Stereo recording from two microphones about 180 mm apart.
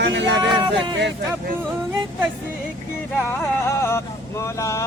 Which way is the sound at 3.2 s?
10° left (ahead or behind).